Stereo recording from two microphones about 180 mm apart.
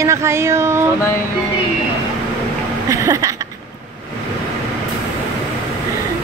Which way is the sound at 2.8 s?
15° right (ahead or behind).